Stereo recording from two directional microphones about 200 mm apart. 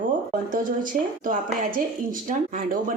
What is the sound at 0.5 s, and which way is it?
Speech, 40° right (ahead or behind).